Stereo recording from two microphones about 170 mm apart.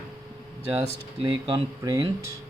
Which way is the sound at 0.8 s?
25° right (ahead or behind).